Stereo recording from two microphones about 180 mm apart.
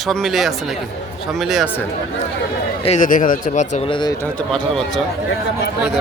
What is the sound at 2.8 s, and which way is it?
Speech, 40° left (ahead or behind).